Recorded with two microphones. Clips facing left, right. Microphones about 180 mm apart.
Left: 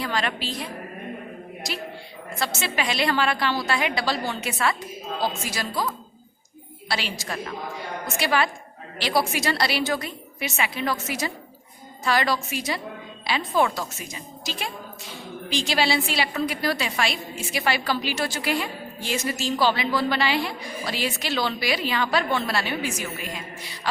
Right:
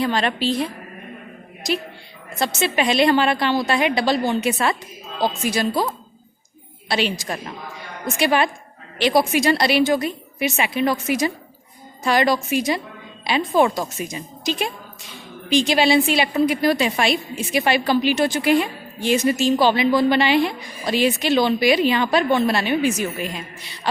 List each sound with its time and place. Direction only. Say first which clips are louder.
0.0 s a woman's voice: right 7 dB; 25° right (ahead or behind)
2.4 s a woman's voice: right 7 dB; 20° right (ahead or behind)
6.8 s a woman's voice: right 7 dB; 20° right (ahead or behind)